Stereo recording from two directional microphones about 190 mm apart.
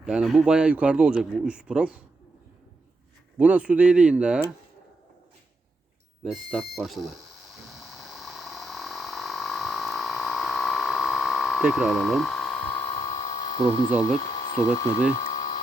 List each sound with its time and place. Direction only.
0.0 s speech: 5° right (ahead or behind)
3.3 s speech: 5° right (ahead or behind)
6.2 s speech: centre (ahead or behind)
7.7 s a sound: centre (ahead or behind); by 13.9 s 25° left (ahead or behind)
14.0 s speech: 20° left (ahead or behind)
15.1 s dental drill: 20° left (ahead or behind)